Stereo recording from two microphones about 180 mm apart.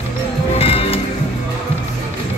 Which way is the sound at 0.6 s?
30° left (ahead or behind).